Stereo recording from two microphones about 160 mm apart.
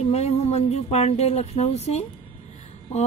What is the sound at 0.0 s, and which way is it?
Speech, 40° left (ahead or behind).